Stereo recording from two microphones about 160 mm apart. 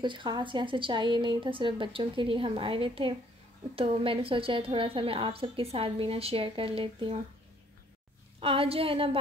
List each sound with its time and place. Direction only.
0.0 s a woman's voice: 30° right (ahead or behind)
8.4 s a woman's voice: 35° right (ahead or behind)